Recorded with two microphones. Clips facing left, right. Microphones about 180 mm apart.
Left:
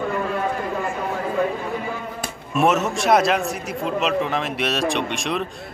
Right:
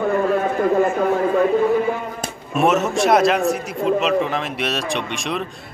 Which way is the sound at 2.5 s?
Centre (ahead or behind).